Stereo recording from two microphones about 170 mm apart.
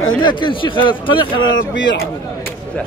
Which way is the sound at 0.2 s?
25° left (ahead or behind).